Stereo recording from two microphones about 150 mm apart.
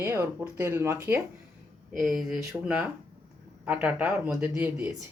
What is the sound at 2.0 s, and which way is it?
A woman's voice, 5° right (ahead or behind).